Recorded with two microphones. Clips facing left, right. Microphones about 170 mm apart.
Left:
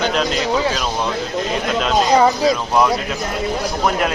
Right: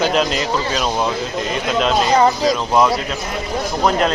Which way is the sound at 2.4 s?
Centre (ahead or behind).